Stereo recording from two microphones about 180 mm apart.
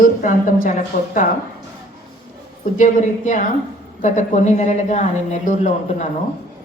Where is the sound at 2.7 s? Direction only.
45° left (ahead or behind).